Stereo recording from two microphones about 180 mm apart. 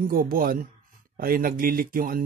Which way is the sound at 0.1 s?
55° right (ahead or behind).